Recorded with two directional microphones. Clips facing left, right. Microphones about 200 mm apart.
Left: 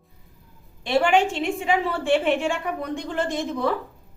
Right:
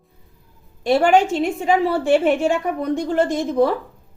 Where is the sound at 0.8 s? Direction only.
40° right (ahead or behind).